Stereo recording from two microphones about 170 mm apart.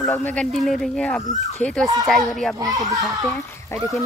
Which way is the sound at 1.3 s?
45° left (ahead or behind).